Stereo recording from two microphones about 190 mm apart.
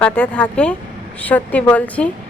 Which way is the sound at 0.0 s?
5° left (ahead or behind).